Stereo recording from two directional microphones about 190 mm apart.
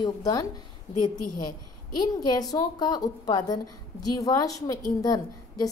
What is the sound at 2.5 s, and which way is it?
A woman's voice, 20° left (ahead or behind).